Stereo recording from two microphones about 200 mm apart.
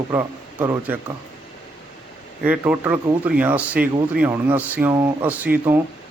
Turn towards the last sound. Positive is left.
turn(degrees=-10)  # may be behind; listen again after turning